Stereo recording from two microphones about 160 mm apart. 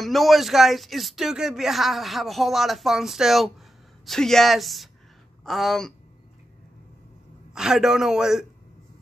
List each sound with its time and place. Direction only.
0.0 s speech: centre (ahead or behind)
7.5 s speech: 5° right (ahead or behind)